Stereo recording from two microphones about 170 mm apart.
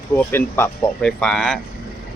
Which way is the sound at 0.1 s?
10° left (ahead or behind).